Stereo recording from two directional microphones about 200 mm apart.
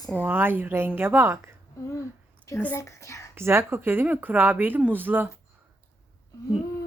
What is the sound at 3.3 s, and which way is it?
Speech, 10° right (ahead or behind).